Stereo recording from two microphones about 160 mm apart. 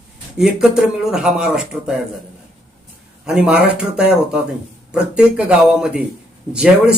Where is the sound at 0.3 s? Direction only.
5° right (ahead or behind).